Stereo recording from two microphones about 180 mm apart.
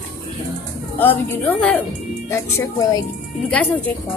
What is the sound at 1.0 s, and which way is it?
A woman's voice, 10° left (ahead or behind).